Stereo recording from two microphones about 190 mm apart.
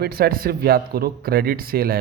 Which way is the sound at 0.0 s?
55° right (ahead or behind).